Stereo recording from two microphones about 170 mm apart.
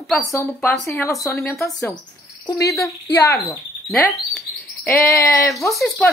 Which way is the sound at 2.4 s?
20° left (ahead or behind).